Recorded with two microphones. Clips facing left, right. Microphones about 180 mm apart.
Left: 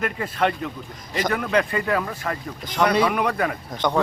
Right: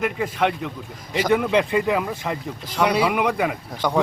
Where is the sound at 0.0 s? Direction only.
10° right (ahead or behind).